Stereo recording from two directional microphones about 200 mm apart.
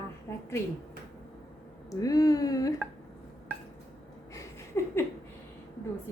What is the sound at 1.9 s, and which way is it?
Speech, 20° left (ahead or behind).